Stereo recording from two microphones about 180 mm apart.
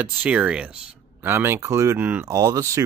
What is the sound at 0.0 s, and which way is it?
Speech, 10° right (ahead or behind).